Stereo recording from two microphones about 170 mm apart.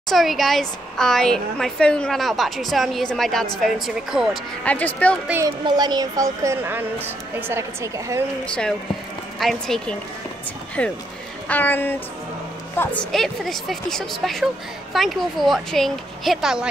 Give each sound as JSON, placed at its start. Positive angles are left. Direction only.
{"t": 0.1, "sound": "a woman's voice", "side_deg": 0}
{"t": 4.6, "sound": "a sound", "side_deg": 10}
{"t": 5.3, "sound": "a woman's voice", "side_deg": -20}
{"t": 9.4, "sound": "a woman's voice", "side_deg": 0}
{"t": 10.8, "sound": "a sound", "side_deg": 10}
{"t": 12.7, "sound": "a woman's voice", "side_deg": 10}